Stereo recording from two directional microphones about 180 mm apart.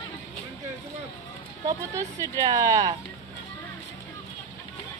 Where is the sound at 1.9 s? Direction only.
20° right (ahead or behind).